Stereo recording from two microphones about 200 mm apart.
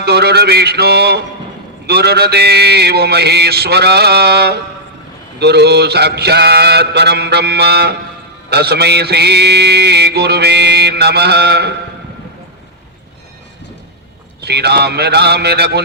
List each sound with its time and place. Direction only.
0.0 s mantra: 55° right (ahead or behind)
14.4 s mantra: 55° right (ahead or behind)